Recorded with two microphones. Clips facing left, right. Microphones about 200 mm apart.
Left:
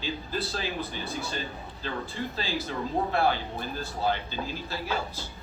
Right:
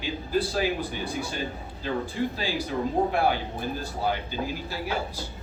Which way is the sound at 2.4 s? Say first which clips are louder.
Right 3 dB; 15° right (ahead or behind).